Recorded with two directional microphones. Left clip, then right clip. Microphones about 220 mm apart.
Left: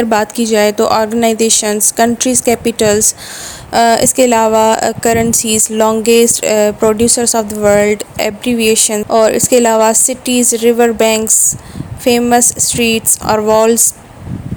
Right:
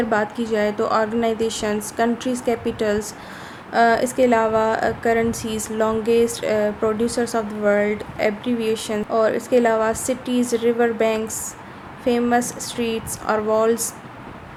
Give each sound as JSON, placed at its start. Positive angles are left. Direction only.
{"t": 0.0, "sound": "a woman's voice", "side_deg": 35}